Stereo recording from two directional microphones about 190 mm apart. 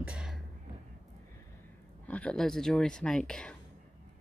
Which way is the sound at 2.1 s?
5° left (ahead or behind).